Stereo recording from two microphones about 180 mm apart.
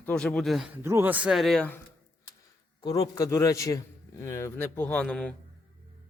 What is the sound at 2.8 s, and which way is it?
A man's voice, 20° left (ahead or behind).